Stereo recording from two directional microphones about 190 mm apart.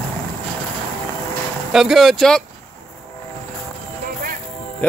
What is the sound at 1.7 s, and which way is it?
Speech, centre (ahead or behind).